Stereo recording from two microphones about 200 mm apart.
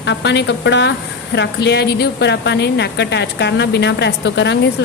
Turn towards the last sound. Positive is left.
turn(degrees=60)  # may be behind; listen again after turning